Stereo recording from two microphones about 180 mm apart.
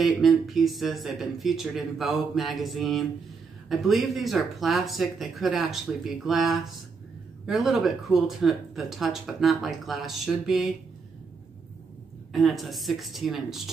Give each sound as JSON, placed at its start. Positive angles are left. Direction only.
{"t": 0.0, "sound": "speech", "side_deg": 0}
{"t": 12.3, "sound": "speech", "side_deg": 0}